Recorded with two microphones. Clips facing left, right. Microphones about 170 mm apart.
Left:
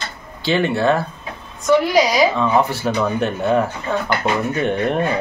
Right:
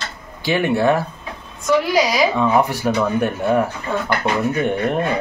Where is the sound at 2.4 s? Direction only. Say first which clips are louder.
Right 1 dB; 15° right (ahead or behind).